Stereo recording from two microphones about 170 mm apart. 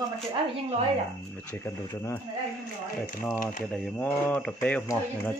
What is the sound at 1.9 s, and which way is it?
Speech, 20° left (ahead or behind).